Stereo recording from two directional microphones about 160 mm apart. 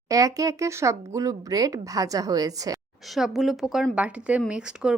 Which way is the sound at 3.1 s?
Centre (ahead or behind).